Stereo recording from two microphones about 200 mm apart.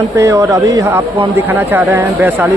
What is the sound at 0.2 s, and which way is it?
Speech, 15° right (ahead or behind).